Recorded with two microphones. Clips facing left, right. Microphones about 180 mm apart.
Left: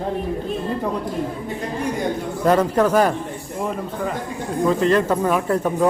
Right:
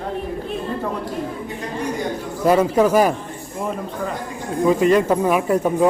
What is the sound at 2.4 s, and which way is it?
Speech, 10° right (ahead or behind).